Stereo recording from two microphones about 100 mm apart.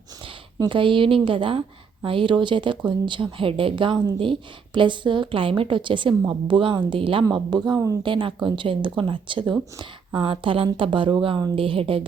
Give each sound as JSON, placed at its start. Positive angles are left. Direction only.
{"t": 0.6, "sound": "speech", "side_deg": -55}
{"t": 7.3, "sound": "speech", "side_deg": -45}